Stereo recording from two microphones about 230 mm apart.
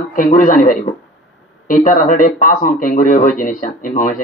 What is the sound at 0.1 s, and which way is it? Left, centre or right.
Speech, left.